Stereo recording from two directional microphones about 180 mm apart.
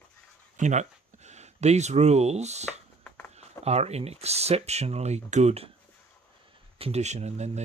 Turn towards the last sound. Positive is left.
turn(degrees=-40)  # may be behind; listen again after turning